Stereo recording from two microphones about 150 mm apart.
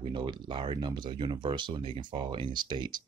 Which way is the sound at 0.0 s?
30° right (ahead or behind).